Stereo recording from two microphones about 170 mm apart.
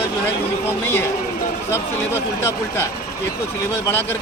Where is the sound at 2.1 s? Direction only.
15° left (ahead or behind).